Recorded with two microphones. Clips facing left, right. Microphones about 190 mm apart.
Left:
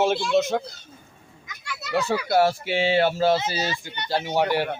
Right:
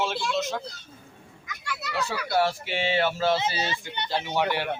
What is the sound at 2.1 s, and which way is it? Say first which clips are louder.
Speech: left 5 dB; 45° left (ahead or behind).